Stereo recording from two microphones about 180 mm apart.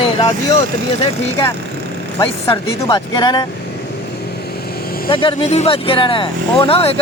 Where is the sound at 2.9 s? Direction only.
20° left (ahead or behind).